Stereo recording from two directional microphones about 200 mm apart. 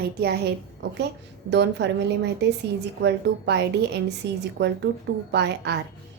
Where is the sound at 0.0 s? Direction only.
55° right (ahead or behind).